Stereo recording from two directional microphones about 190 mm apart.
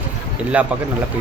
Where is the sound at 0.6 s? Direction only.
5° right (ahead or behind).